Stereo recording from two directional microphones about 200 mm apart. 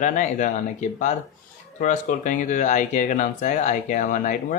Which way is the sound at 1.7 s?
40° left (ahead or behind).